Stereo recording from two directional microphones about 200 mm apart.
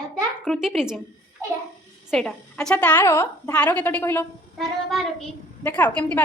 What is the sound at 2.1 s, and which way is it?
A woman's voice, 5° left (ahead or behind).